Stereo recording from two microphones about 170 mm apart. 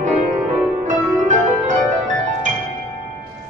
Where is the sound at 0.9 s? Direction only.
50° right (ahead or behind).